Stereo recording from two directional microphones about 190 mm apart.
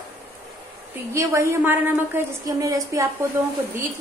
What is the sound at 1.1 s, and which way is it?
A woman's voice, 15° right (ahead or behind).